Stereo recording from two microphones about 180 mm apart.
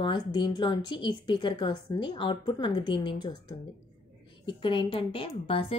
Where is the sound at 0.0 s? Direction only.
25° left (ahead or behind).